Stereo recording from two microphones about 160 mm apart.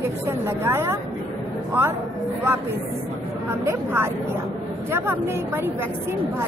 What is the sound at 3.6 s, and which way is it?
A woman's voice, 15° right (ahead or behind).